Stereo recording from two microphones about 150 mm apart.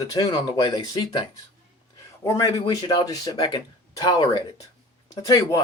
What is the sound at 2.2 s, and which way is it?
Speech, 20° left (ahead or behind).